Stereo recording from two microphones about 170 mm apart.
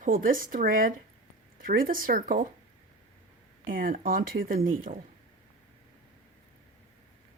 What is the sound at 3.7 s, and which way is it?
Speech, 55° right (ahead or behind).